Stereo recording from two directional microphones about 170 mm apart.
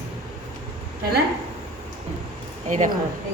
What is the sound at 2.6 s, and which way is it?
Speech, 45° right (ahead or behind).